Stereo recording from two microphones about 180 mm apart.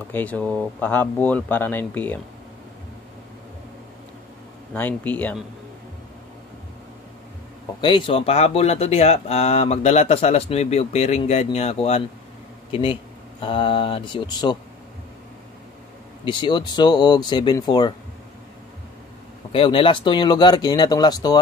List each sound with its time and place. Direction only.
0.1 s speech: 10° left (ahead or behind)
4.7 s speech: 10° left (ahead or behind)
7.8 s speech: 30° left (ahead or behind)
13.4 s speech: 30° left (ahead or behind)
16.3 s speech: 25° left (ahead or behind)
19.5 s speech: 30° left (ahead or behind)